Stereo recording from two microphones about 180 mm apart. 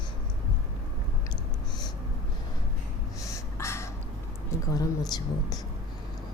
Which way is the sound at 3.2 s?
15° left (ahead or behind).